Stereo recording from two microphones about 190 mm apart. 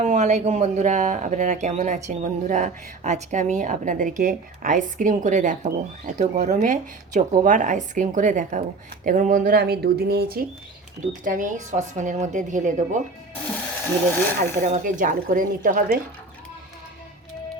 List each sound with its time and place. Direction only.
0.0 s speech: 35° right (ahead or behind); by 10.4 s 55° right (ahead or behind)
11.2 s speech: 45° right (ahead or behind)
14.5 s speech: 40° right (ahead or behind)